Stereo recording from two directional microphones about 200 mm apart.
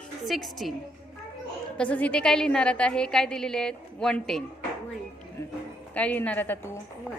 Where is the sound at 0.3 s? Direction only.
Centre (ahead or behind).